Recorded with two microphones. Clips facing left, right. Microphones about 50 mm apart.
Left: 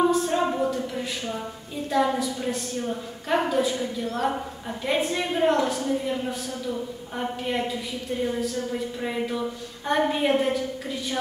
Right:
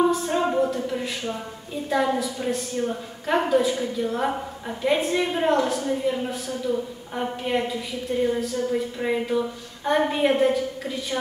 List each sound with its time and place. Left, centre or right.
0.0 s a sound: centre
1.9 s a woman's voice: centre
4.0 s a woman's voice: right
4.3 s a woman's voice: centre